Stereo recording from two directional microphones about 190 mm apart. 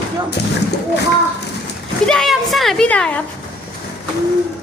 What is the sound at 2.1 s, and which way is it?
A woman's voice, centre (ahead or behind).